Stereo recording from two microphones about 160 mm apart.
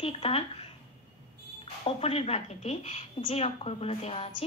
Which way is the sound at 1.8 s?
40° left (ahead or behind).